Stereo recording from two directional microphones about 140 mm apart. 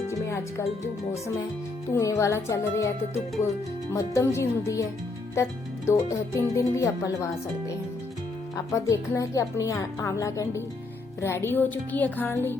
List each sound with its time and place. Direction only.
1.9 s speech: 20° left (ahead or behind)
8.5 s speech: 20° left (ahead or behind)